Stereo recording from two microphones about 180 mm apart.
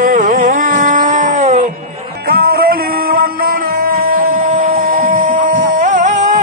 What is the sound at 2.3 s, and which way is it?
Music, 60° right (ahead or behind).